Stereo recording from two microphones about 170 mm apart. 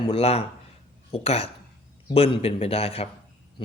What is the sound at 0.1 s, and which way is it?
Speech, 35° left (ahead or behind).